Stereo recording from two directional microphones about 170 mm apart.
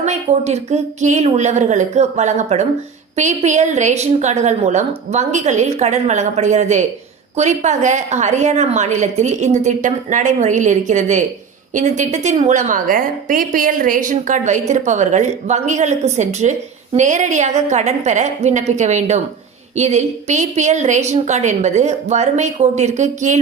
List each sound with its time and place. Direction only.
0.0 s a woman's voice: 40° right (ahead or behind)